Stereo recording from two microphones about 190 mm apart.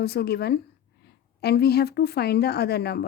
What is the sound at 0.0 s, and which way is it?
A woman's voice, 55° left (ahead or behind).